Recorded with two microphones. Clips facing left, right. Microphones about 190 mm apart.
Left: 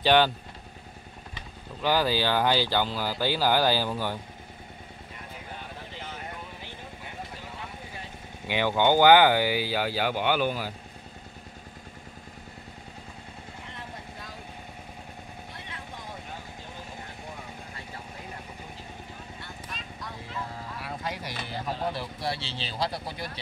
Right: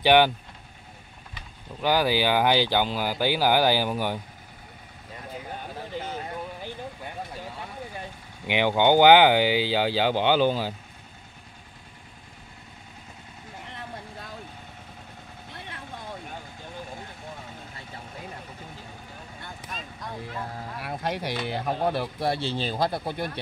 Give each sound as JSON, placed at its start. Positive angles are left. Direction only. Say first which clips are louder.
{"t": 0.0, "sound": "speech", "louder": "right 3 dB", "side_deg": -15}
{"t": 1.8, "sound": "speech", "louder": "right 2 dB", "side_deg": -15}
{"t": 8.5, "sound": "speech", "louder": "right 3 dB", "side_deg": -20}
{"t": 19.4, "sound": "a sound", "louder": "right 2 dB", "side_deg": -50}
{"t": 20.8, "sound": "speech", "louder": "right 6 dB", "side_deg": -65}